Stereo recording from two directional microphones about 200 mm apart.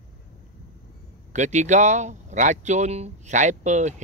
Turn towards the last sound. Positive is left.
turn(degrees=-35)  # may be behind; listen again after turning